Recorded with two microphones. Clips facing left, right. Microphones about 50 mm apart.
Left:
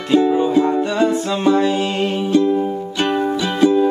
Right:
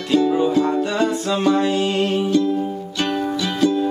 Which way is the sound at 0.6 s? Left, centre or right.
Centre.